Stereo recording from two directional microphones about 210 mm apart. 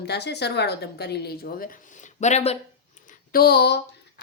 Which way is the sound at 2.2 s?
30° left (ahead or behind).